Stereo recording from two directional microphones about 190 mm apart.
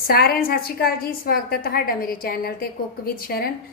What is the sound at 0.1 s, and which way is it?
A woman's voice, 55° left (ahead or behind).